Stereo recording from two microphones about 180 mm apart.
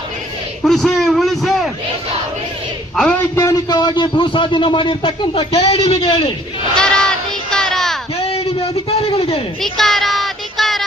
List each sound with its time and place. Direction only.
0.6 s a man's voice: centre (ahead or behind)
2.9 s a man's voice: 5° left (ahead or behind)
3.3 s speech: 20° left (ahead or behind)
6.7 s a sound: 5° left (ahead or behind)
8.3 s a sound: 35° left (ahead or behind)
9.6 s child singing: centre (ahead or behind)